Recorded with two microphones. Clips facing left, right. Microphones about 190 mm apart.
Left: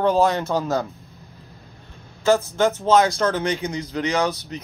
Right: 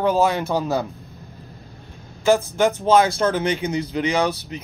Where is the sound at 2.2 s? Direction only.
10° right (ahead or behind).